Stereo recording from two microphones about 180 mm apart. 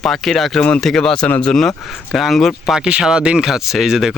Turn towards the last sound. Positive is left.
turn(degrees=-5)  # may be behind; listen again after turning